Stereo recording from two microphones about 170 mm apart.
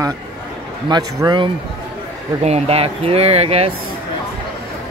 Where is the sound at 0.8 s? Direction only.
25° right (ahead or behind).